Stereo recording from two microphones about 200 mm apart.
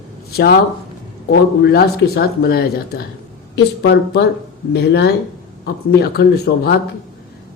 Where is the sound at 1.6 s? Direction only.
50° left (ahead or behind).